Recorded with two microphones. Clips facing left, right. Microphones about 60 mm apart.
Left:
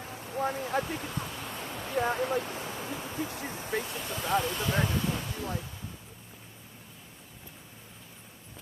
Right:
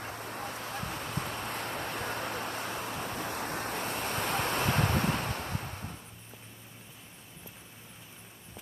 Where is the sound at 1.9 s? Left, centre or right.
Left.